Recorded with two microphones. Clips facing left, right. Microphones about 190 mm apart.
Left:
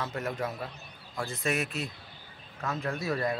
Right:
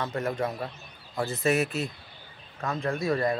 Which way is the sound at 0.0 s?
5° left (ahead or behind).